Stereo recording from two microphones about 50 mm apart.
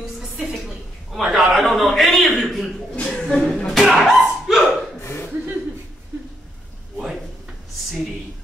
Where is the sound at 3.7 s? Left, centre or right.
Centre.